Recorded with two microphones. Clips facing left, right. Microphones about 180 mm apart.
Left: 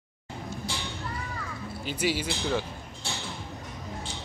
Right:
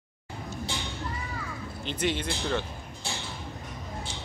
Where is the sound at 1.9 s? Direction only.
5° left (ahead or behind).